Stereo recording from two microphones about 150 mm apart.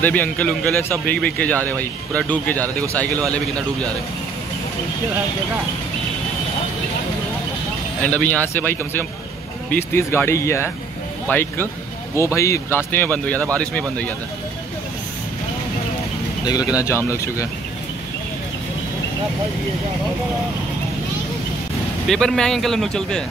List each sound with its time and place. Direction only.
0.0 s speech: 10° left (ahead or behind)
8.0 s speech: 10° left (ahead or behind)
16.4 s speech: 25° left (ahead or behind)
22.0 s speech: centre (ahead or behind)